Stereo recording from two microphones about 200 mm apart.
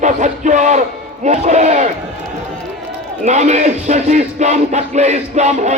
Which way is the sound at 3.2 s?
35° right (ahead or behind).